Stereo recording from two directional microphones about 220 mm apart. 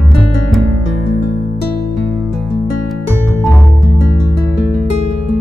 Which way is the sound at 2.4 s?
Centre (ahead or behind).